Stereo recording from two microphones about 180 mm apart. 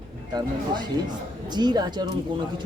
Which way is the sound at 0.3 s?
25° right (ahead or behind).